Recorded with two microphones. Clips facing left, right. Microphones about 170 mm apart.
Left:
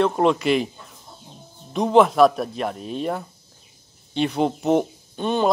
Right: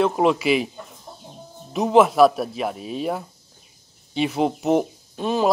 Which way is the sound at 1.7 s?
5° right (ahead or behind).